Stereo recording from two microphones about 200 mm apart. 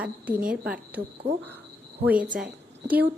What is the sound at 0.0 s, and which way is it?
Speech, 5° right (ahead or behind).